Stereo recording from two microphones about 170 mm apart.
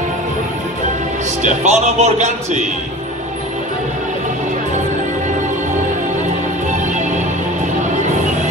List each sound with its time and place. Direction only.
1.4 s speech: 40° right (ahead or behind)